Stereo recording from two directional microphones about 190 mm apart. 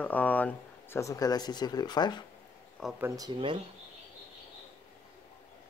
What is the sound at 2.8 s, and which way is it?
Speech, centre (ahead or behind).